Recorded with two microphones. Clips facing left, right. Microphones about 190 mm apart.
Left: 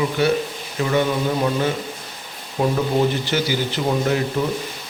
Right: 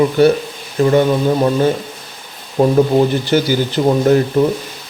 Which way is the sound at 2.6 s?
35° right (ahead or behind).